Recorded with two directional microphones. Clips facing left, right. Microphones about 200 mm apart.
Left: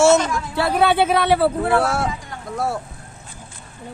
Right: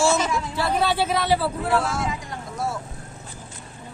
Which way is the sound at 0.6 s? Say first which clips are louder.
Left 6 dB; 60° left (ahead or behind).